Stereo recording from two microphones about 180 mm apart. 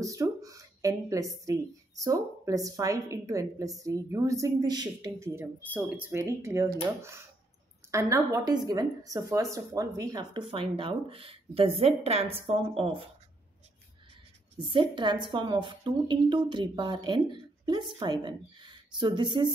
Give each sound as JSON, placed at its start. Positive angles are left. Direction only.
{"t": 0.0, "sound": "a woman's voice", "side_deg": -20}
{"t": 14.6, "sound": "a woman's voice", "side_deg": -25}